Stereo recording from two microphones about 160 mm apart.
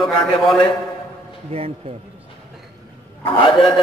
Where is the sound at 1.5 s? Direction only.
35° right (ahead or behind).